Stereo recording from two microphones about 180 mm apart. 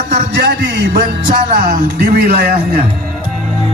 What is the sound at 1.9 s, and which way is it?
Speech, 60° right (ahead or behind).